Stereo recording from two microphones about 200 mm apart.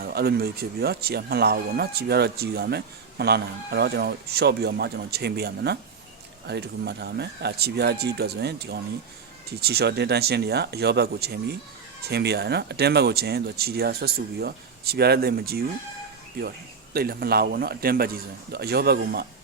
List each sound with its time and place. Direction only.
0.0 s speech: 50° right (ahead or behind)
16.9 s speech: 50° right (ahead or behind)